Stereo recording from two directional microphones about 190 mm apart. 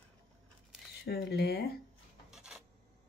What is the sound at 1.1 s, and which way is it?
Speech, 55° left (ahead or behind).